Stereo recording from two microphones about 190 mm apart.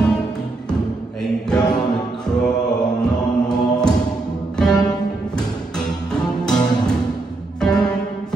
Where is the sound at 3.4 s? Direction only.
20° left (ahead or behind).